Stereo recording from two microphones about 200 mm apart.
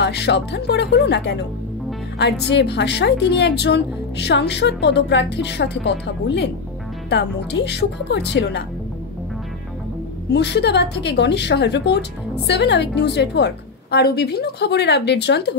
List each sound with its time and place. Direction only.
0.0 s speech: 60° left (ahead or behind)
10.3 s speech: 60° left (ahead or behind)